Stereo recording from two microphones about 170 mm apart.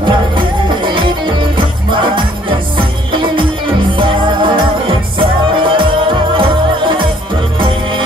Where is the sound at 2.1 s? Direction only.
30° right (ahead or behind).